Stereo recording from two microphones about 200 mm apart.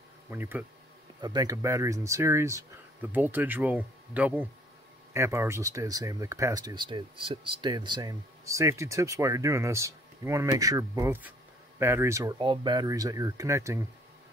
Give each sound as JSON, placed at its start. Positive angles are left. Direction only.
{"t": 0.3, "sound": "speech", "side_deg": -10}